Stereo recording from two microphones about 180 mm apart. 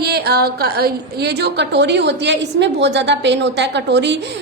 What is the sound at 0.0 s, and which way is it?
A woman's voice, 60° right (ahead or behind).